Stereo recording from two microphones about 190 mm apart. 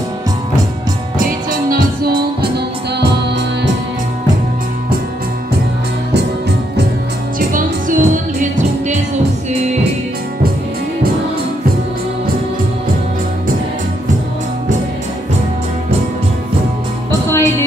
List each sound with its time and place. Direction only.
1.2 s music: 50° right (ahead or behind)
7.3 s music: 45° right (ahead or behind)
17.3 s music: 15° left (ahead or behind)